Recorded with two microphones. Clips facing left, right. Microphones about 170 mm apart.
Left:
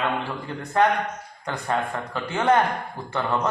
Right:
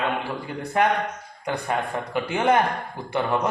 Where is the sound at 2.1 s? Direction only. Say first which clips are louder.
Even; 15° right (ahead or behind).